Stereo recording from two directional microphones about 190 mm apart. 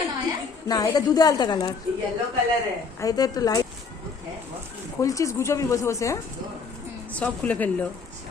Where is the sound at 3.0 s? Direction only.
20° left (ahead or behind).